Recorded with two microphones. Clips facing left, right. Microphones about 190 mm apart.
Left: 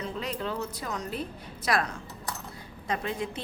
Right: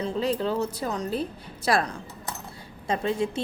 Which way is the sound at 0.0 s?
30° right (ahead or behind).